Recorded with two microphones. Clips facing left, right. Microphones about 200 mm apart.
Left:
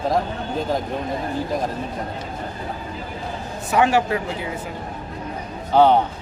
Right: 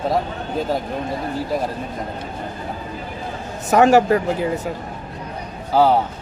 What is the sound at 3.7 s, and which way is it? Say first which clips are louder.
Speech: right 5 dB; 45° right (ahead or behind).